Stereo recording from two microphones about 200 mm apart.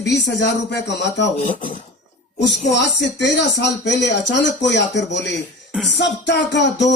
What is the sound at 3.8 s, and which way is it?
A man's voice, 60° left (ahead or behind).